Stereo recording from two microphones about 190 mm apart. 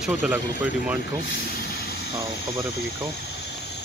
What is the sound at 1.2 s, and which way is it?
Vehicle, 60° left (ahead or behind).